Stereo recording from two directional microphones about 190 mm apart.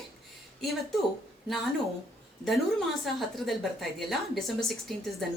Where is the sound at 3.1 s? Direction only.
Centre (ahead or behind).